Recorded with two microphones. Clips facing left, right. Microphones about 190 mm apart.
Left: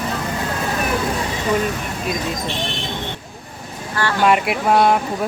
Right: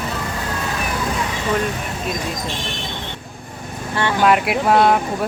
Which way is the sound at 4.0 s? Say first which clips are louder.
Right 1 dB; 20° right (ahead or behind).